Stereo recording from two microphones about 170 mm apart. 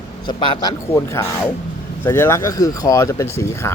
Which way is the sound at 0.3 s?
30° left (ahead or behind).